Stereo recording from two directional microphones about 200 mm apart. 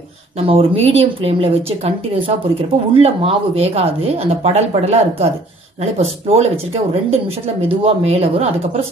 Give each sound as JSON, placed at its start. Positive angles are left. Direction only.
{"t": 0.4, "sound": "speech", "side_deg": -30}